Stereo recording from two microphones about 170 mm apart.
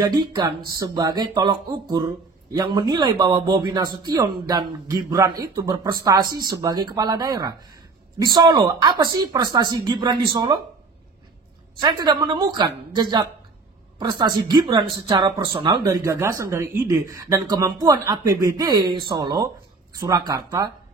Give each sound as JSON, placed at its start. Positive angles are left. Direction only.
{"t": 0.0, "sound": "speech", "side_deg": -25}
{"t": 11.8, "sound": "speech", "side_deg": -25}